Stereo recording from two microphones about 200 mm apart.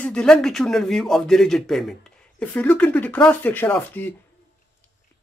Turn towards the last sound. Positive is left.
turn(degrees=10)  # may be behind; listen again after turning